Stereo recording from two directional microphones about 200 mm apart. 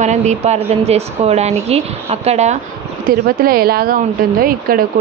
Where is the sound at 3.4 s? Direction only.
50° right (ahead or behind).